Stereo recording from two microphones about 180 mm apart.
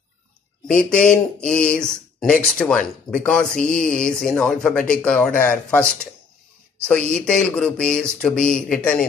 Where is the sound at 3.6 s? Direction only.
50° left (ahead or behind).